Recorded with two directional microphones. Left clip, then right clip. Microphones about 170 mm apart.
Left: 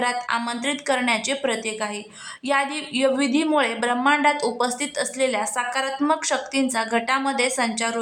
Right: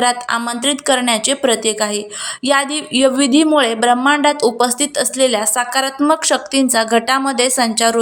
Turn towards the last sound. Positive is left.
turn(degrees=-30)  # may be behind; listen again after turning